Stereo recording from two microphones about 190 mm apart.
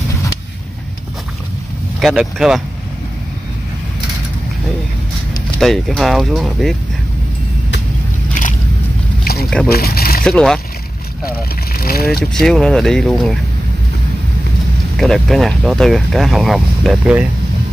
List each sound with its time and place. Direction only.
2.0 s speech: centre (ahead or behind)
5.6 s speech: centre (ahead or behind)
9.2 s a sound: 55° left (ahead or behind)
10.2 s speech: 5° left (ahead or behind)
11.7 s speech: 50° left (ahead or behind)
12.3 s speech: centre (ahead or behind)
15.0 s speech: centre (ahead or behind)